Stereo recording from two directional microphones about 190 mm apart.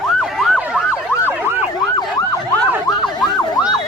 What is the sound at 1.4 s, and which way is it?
Emergency vehicle, 10° right (ahead or behind).